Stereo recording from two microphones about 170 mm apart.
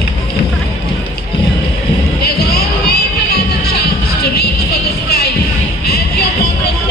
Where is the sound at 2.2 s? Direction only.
65° left (ahead or behind).